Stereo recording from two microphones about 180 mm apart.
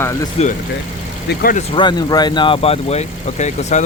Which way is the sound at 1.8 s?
25° left (ahead or behind).